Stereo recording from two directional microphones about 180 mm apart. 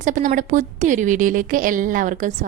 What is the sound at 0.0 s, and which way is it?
A woman's voice, 45° right (ahead or behind).